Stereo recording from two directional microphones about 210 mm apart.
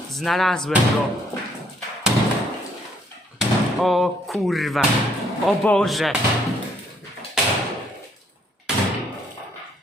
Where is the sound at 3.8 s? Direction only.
Centre (ahead or behind).